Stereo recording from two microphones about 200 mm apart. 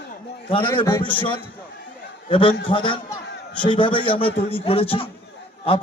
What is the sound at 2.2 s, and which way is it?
A man's voice, 25° left (ahead or behind).